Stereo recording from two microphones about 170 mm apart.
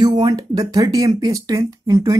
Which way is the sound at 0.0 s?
25° right (ahead or behind).